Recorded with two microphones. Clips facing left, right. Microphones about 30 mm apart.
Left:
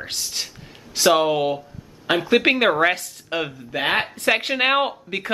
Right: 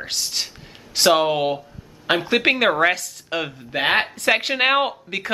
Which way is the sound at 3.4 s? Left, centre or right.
Right.